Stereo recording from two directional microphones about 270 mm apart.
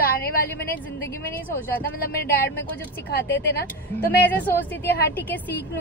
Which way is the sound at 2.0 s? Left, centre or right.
Left.